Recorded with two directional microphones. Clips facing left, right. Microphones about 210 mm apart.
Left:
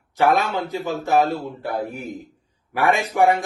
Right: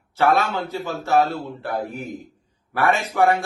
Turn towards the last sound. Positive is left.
turn(degrees=15)  # may be behind; listen again after turning